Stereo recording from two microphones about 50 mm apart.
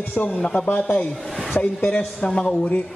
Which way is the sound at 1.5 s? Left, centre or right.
Left.